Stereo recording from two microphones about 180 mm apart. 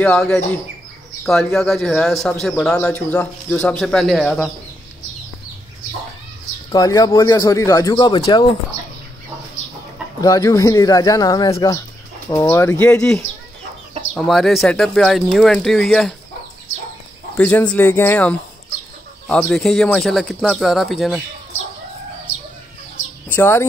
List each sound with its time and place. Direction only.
0.0 s speech: 5° left (ahead or behind)
6.7 s speech: 20° left (ahead or behind)
10.2 s speech: 20° left (ahead or behind); by 16.2 s centre (ahead or behind)
17.4 s speech: 10° left (ahead or behind)
23.3 s speech: 10° left (ahead or behind)